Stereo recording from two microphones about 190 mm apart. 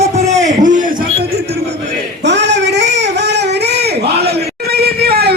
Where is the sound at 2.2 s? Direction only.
65° right (ahead or behind).